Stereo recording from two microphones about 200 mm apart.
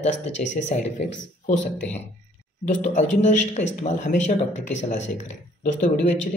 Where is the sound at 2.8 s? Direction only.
35° left (ahead or behind).